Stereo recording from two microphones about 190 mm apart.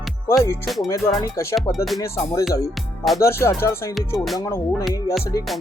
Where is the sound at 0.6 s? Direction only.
Centre (ahead or behind).